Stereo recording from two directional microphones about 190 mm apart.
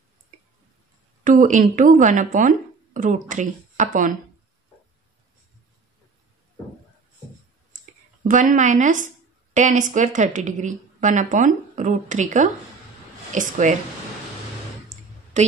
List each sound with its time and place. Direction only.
1.2 s speech: 45° right (ahead or behind)
7.7 s speech: 40° right (ahead or behind)
15.3 s a woman's voice: 40° right (ahead or behind)